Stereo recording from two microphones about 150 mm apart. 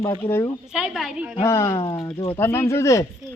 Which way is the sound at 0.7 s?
5° right (ahead or behind).